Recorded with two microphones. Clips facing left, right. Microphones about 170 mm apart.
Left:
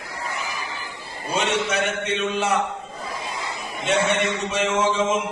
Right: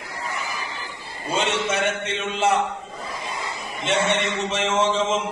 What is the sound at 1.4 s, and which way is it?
A man's voice, 25° right (ahead or behind).